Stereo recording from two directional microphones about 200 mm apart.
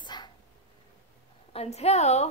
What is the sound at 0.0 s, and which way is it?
Dog, 20° left (ahead or behind).